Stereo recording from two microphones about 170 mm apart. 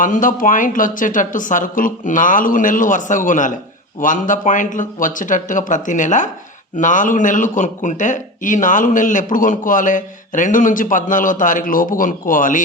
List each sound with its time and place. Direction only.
0.0 s speech: 50° left (ahead or behind)